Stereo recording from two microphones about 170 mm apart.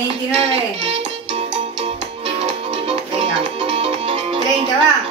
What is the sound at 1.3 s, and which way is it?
Music, 35° right (ahead or behind).